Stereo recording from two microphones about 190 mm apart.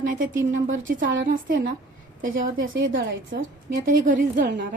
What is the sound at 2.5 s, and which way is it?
Speech, 90° right.